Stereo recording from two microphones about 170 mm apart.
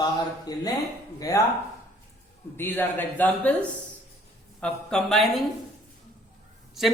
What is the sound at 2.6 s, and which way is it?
A woman's voice, 10° left (ahead or behind).